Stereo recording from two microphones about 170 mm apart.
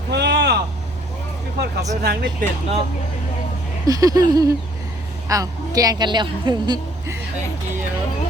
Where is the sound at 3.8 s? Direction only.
20° right (ahead or behind).